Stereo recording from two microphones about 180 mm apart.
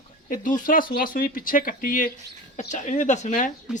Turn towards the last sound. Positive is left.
turn(degrees=-5)  # may be behind; listen again after turning